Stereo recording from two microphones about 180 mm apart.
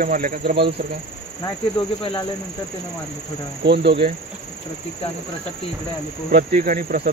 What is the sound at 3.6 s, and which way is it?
Speech, 70° right (ahead or behind).